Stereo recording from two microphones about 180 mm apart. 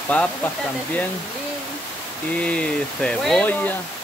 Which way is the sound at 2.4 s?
5° left (ahead or behind).